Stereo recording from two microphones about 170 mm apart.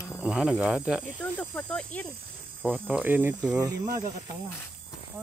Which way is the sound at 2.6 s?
5° right (ahead or behind).